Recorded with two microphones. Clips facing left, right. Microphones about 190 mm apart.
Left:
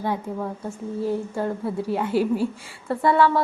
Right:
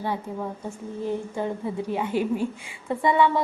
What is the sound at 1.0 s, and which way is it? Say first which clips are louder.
Speech: left 2 dB; 5° left (ahead or behind).